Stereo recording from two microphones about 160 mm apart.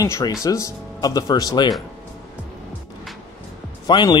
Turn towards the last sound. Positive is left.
turn(degrees=25)  # may be behind; listen again after turning